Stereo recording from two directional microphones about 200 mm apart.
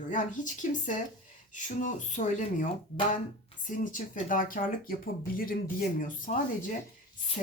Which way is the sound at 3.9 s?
45° left (ahead or behind).